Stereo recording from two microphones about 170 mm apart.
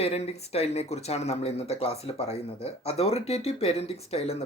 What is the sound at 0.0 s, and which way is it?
Speech, 40° left (ahead or behind).